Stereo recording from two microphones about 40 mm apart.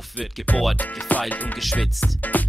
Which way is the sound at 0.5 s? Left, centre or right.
Left.